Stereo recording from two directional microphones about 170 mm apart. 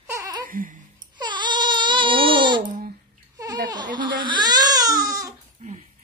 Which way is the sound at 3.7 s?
25° right (ahead or behind).